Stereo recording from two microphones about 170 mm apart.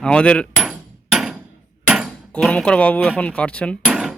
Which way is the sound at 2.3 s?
5° left (ahead or behind).